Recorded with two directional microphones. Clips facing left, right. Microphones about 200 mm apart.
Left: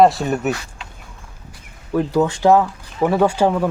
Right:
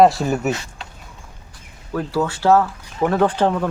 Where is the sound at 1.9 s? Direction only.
15° left (ahead or behind).